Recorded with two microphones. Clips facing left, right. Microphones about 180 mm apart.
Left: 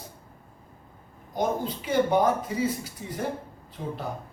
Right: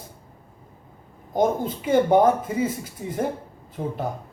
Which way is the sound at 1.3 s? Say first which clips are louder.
Right 5 dB; 50° right (ahead or behind).